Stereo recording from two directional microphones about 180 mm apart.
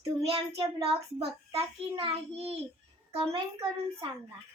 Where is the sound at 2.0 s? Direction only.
30° right (ahead or behind).